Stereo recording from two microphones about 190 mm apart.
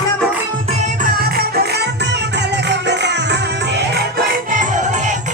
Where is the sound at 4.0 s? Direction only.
50° right (ahead or behind).